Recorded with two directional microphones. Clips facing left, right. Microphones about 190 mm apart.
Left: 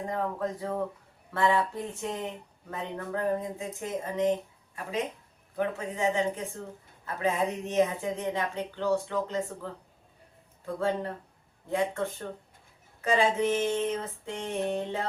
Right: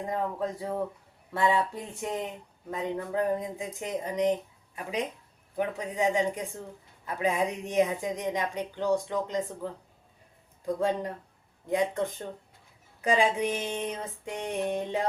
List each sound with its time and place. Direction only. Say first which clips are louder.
0.1 s a woman's voice: right 1 dB; 15° right (ahead or behind)
10.8 s a woman's voice: left 1 dB; 15° right (ahead or behind)